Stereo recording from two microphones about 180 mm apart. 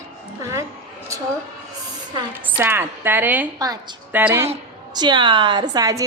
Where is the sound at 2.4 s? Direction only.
10° right (ahead or behind).